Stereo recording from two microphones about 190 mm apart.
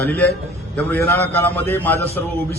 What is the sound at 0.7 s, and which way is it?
A man's voice, 10° left (ahead or behind).